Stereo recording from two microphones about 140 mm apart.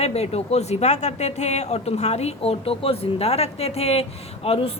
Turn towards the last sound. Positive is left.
turn(degrees=45)  # may be behind; listen again after turning